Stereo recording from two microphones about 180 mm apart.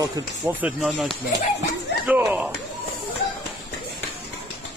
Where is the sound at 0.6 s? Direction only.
5° right (ahead or behind).